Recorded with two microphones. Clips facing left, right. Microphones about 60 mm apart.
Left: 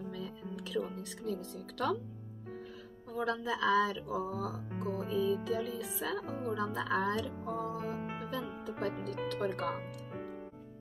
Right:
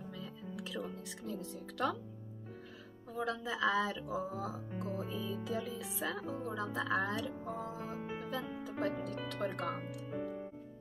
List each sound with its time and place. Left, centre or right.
0.2 s music: centre
1.2 s speech: centre
3.2 s speech: centre
5.0 s music: centre
5.6 s speech: centre
8.2 s music: centre
8.6 s speech: centre